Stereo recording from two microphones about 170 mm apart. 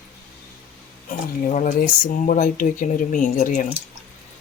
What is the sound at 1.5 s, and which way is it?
Speech, 50° left (ahead or behind).